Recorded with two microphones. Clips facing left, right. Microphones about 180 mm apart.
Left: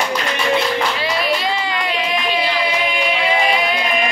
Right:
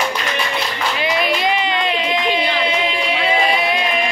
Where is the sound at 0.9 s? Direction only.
20° right (ahead or behind).